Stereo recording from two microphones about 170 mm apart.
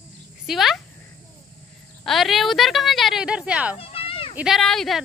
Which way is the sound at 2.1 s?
Centre (ahead or behind).